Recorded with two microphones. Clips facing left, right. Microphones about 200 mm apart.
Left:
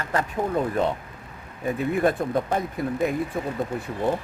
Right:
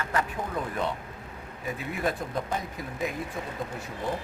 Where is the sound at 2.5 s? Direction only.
55° left (ahead or behind).